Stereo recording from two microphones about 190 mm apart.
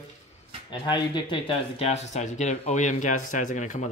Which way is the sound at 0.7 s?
25° left (ahead or behind).